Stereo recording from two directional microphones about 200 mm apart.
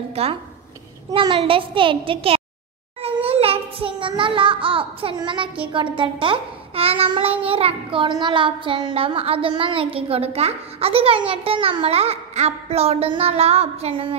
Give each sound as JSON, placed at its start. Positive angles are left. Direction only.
{"t": 0.1, "sound": "child singing", "side_deg": -30}